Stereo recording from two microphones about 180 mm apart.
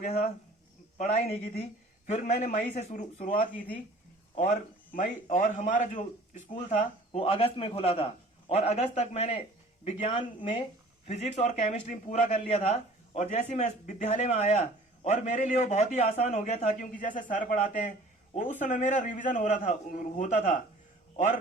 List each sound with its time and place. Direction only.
0.9 s a man's voice: 40° left (ahead or behind)